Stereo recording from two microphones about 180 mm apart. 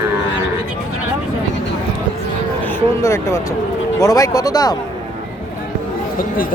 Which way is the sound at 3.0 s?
15° left (ahead or behind).